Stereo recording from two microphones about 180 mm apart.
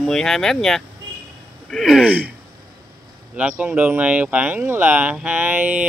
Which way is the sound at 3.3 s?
5° right (ahead or behind).